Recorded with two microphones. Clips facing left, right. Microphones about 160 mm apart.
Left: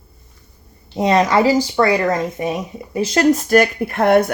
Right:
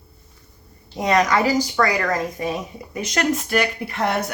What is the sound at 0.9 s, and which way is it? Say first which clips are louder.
Speech: left 4 dB; 25° left (ahead or behind).